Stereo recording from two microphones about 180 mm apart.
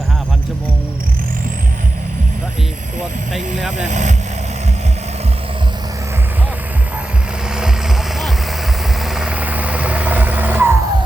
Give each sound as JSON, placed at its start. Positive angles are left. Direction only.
{"t": 3.3, "sound": "speech", "side_deg": 0}
{"t": 3.8, "sound": "vehicle", "side_deg": -40}
{"t": 9.0, "sound": "vehicle", "side_deg": -5}